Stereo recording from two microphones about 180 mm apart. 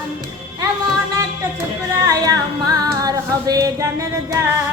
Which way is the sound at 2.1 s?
20° right (ahead or behind).